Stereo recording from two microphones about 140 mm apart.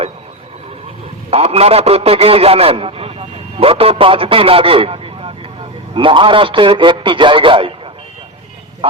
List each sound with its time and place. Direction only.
1.3 s a man's voice: 45° right (ahead or behind)
8.8 s a man's voice: 40° right (ahead or behind)